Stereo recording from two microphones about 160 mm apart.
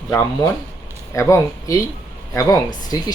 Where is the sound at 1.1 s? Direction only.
20° left (ahead or behind).